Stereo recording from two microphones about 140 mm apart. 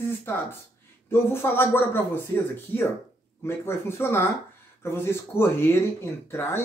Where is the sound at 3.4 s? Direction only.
15° left (ahead or behind).